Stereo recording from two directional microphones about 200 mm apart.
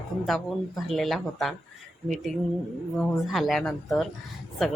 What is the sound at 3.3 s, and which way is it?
Speech, centre (ahead or behind).